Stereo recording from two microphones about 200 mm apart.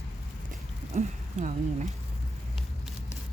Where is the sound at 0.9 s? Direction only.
35° right (ahead or behind).